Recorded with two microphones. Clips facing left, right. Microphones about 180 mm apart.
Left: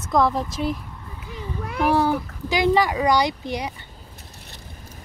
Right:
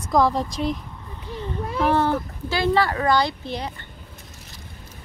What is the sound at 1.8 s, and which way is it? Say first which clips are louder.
Speech: left 1 dB; 10° left (ahead or behind).